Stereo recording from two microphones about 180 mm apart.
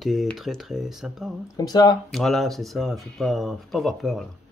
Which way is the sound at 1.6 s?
20° left (ahead or behind).